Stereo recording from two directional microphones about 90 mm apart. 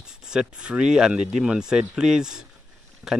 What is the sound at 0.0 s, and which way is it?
Speech, 10° right (ahead or behind).